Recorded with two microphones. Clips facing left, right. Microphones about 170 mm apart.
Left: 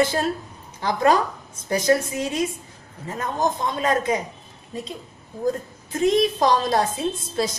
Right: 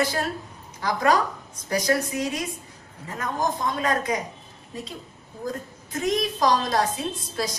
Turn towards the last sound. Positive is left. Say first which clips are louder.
# left 5 dB
turn(degrees=25)  # may be behind; listen again after turning